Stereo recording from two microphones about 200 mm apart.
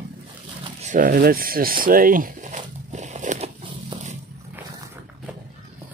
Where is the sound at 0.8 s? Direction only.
40° right (ahead or behind).